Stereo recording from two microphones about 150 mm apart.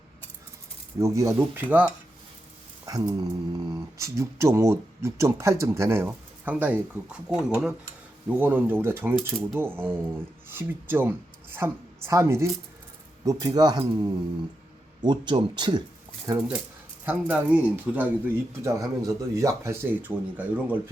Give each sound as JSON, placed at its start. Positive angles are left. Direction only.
{"t": 0.9, "sound": "speech", "side_deg": -20}
{"t": 2.8, "sound": "speech", "side_deg": -25}
{"t": 17.1, "sound": "speech", "side_deg": -10}